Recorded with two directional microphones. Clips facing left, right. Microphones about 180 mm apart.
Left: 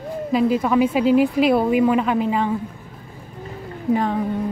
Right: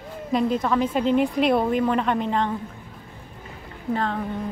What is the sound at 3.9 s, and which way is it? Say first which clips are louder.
Speech: left 5 dB; 10° left (ahead or behind).